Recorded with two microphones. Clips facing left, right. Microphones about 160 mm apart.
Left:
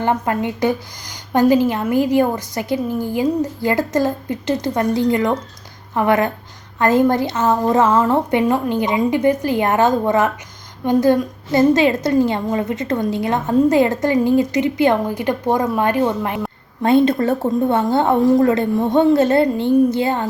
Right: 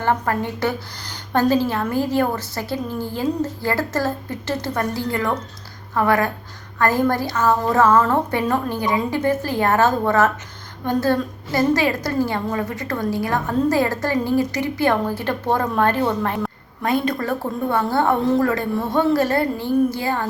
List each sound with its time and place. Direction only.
0.0 s a woman's voice: 15° left (ahead or behind)
16.8 s a woman's voice: 25° left (ahead or behind)